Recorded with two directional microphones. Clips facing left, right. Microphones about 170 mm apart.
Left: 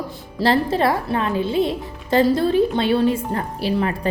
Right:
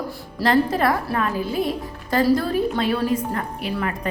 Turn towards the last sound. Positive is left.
turn(degrees=30)  # may be behind; listen again after turning